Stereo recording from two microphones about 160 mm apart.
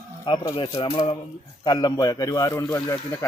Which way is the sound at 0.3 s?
25° left (ahead or behind).